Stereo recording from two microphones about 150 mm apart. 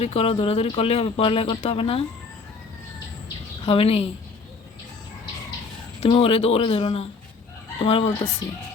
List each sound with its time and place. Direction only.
0.0 s speech: 40° left (ahead or behind)
3.7 s speech: 40° left (ahead or behind)
6.0 s speech: 40° left (ahead or behind)